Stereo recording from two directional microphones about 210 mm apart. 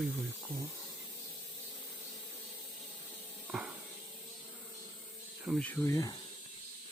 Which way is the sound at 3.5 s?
5° right (ahead or behind).